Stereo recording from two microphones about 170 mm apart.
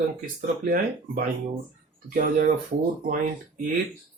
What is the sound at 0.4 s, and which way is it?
Speech, 55° right (ahead or behind).